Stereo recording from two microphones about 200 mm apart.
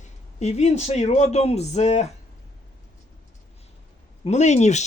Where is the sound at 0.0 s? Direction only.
35° left (ahead or behind).